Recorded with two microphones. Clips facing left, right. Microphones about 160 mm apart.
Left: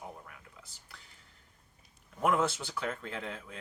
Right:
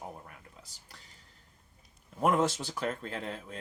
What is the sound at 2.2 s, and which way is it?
Speech, 35° right (ahead or behind).